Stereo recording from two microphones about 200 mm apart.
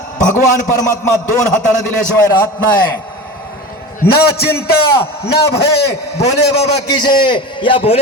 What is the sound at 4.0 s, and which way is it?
A man's voice, 50° left (ahead or behind).